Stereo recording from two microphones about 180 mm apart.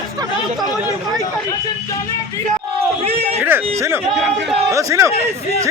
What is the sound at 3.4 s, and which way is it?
Speech, 10° right (ahead or behind).